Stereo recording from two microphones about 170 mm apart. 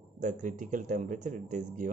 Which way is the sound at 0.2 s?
45° right (ahead or behind).